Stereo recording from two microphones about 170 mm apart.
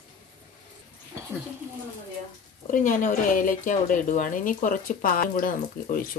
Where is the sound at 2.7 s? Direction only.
50° left (ahead or behind).